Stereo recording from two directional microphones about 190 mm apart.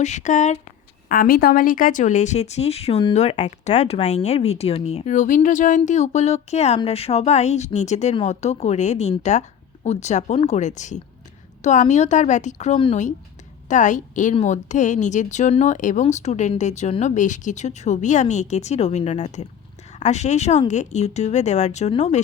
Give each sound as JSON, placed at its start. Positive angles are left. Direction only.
{"t": 0.0, "sound": "speech", "side_deg": 40}
{"t": 1.0, "sound": "speech", "side_deg": 50}